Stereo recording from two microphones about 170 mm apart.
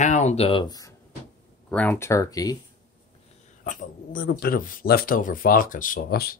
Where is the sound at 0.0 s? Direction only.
45° left (ahead or behind); by 0.9 s 20° left (ahead or behind).